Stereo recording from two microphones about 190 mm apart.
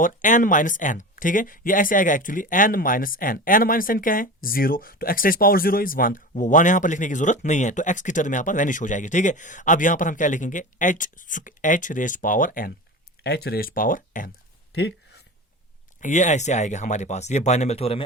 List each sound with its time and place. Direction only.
0.0 s speech: 45° left (ahead or behind)
13.2 s speech: 60° left (ahead or behind)
14.8 s speech: 60° left (ahead or behind)
16.0 s speech: 40° left (ahead or behind)